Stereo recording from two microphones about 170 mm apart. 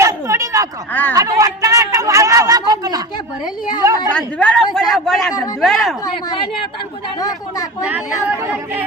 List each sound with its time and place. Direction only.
0.0 s a sound: 15° right (ahead or behind)
1.1 s a woman's voice: 20° right (ahead or behind)
3.4 s speech: 25° left (ahead or behind)
4.1 s a man's voice: 5° left (ahead or behind)
6.2 s speech: 25° left (ahead or behind)
7.9 s speech: 10° right (ahead or behind)